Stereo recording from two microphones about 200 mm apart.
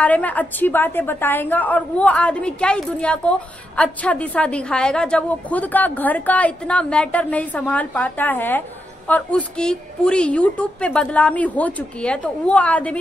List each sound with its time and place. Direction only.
0.0 s a woman's voice: 5° left (ahead or behind)